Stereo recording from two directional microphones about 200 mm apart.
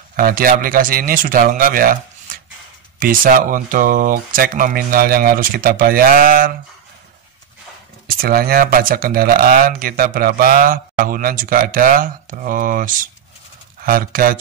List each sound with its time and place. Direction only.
0.1 s speech: 45° right (ahead or behind)
8.1 s speech: 45° right (ahead or behind)